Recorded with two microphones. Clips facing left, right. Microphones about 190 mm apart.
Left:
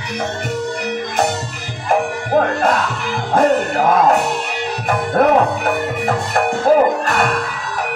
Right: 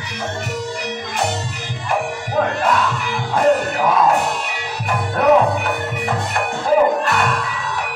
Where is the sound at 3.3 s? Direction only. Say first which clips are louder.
Left 1 dB; 45° left (ahead or behind).